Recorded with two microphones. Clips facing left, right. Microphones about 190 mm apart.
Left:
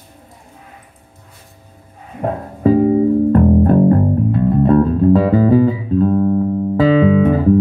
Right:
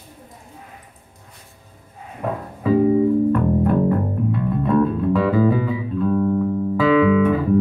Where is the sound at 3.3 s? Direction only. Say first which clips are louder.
Left 6 dB; 40° left (ahead or behind).